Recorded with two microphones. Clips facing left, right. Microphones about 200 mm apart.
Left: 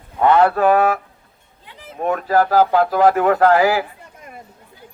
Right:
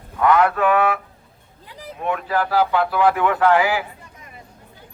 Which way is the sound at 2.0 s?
40° left (ahead or behind).